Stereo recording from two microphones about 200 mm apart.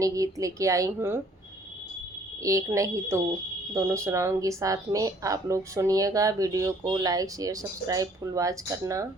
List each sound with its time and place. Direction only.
0.0 s speech: 15° right (ahead or behind)
2.4 s speech: 15° right (ahead or behind)